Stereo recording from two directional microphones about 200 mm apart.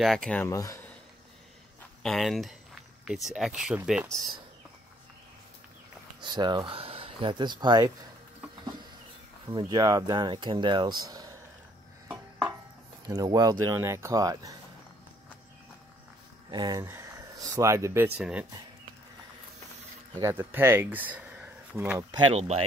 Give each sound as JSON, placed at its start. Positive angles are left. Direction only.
{"t": 0.0, "sound": "speech", "side_deg": 0}
{"t": 2.0, "sound": "speech", "side_deg": 0}
{"t": 6.2, "sound": "speech", "side_deg": -20}
{"t": 9.5, "sound": "speech", "side_deg": -20}
{"t": 12.1, "sound": "a sound", "side_deg": -10}
{"t": 13.0, "sound": "speech", "side_deg": -20}
{"t": 16.4, "sound": "speech", "side_deg": -20}
{"t": 20.2, "sound": "speech", "side_deg": -10}